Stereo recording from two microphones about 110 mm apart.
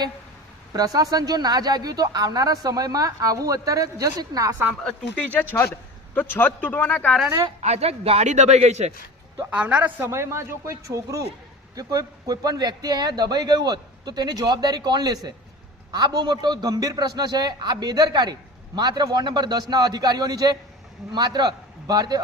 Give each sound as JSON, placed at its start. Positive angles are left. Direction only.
{"t": 0.7, "sound": "a man's voice", "side_deg": -35}
{"t": 4.8, "sound": "speech", "side_deg": 15}
{"t": 7.6, "sound": "a man's voice", "side_deg": -80}
{"t": 9.5, "sound": "speech", "side_deg": -10}
{"t": 10.0, "sound": "a man's voice", "side_deg": -25}